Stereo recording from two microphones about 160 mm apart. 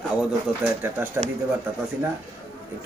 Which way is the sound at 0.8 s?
10° right (ahead or behind).